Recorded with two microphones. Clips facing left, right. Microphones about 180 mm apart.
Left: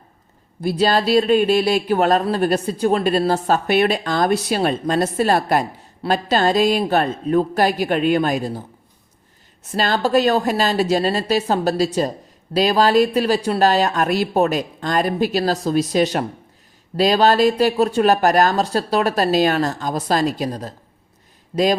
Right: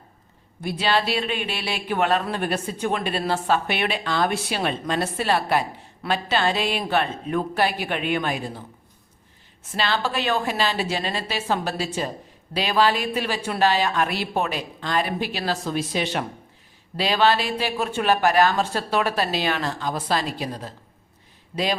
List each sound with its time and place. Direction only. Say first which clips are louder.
0.6 s speech: left 6 dB; 40° left (ahead or behind)
9.7 s speech: left 8 dB; 45° left (ahead or behind)